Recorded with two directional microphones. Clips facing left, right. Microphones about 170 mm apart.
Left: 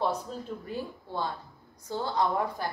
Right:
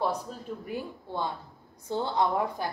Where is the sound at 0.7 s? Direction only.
15° right (ahead or behind).